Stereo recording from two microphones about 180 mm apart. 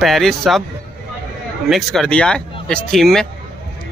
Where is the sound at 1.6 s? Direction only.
Centre (ahead or behind).